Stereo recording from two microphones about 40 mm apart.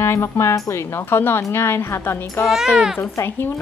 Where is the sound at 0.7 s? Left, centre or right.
Left.